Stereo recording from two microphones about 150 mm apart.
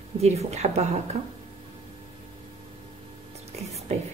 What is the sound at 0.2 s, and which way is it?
Speech, 45° right (ahead or behind).